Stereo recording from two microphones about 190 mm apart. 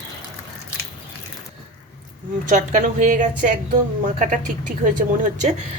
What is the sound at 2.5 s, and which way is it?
A woman's voice, 40° right (ahead or behind).